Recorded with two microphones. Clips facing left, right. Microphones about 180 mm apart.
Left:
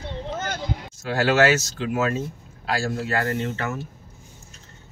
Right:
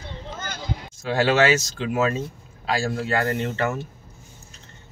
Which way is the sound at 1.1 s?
5° left (ahead or behind).